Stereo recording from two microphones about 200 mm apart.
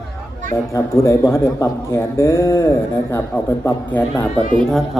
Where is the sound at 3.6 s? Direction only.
15° left (ahead or behind).